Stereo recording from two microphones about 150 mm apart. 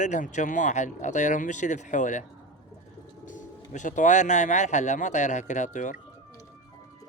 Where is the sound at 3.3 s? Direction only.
55° left (ahead or behind).